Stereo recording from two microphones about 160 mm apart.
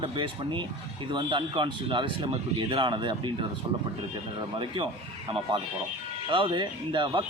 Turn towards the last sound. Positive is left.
turn(degrees=-30)  # may be behind; listen again after turning